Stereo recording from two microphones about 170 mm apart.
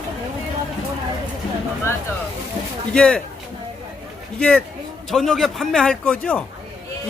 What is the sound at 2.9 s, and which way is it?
Speech, 5° left (ahead or behind).